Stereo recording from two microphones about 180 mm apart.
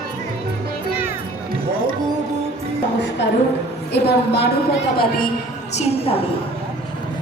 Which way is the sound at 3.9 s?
70° left (ahead or behind).